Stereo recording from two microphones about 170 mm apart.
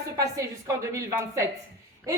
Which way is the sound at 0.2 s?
20° right (ahead or behind).